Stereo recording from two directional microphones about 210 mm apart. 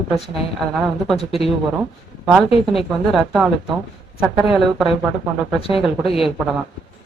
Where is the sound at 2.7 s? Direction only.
Centre (ahead or behind).